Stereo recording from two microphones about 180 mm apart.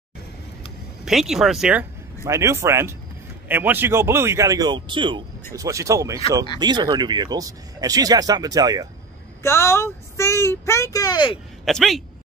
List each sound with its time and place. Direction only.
1.0 s speech: centre (ahead or behind)
2.2 s speech: 15° right (ahead or behind)
9.4 s speech: 15° left (ahead or behind)
11.6 s speech: centre (ahead or behind)